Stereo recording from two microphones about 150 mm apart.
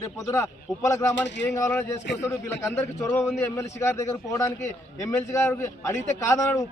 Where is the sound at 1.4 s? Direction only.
20° left (ahead or behind).